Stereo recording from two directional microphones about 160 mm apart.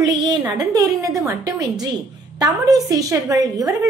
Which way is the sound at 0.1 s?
25° right (ahead or behind).